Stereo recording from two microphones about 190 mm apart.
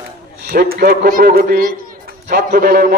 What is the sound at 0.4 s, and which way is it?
A man's voice, 55° right (ahead or behind).